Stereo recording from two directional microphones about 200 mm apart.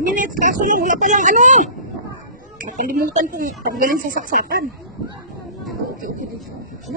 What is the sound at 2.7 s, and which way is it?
Speech, 45° right (ahead or behind).